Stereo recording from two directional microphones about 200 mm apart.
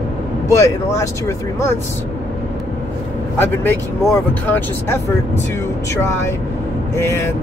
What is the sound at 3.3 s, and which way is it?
Speech, 10° left (ahead or behind).